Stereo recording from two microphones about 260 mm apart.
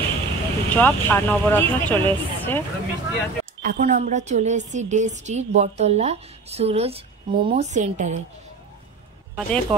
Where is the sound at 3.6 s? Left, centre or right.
Right.